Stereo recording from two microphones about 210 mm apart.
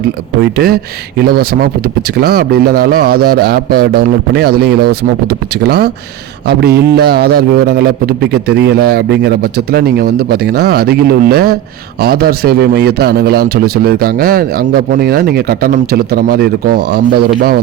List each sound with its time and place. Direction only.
0.5 s a man's voice: 45° right (ahead or behind)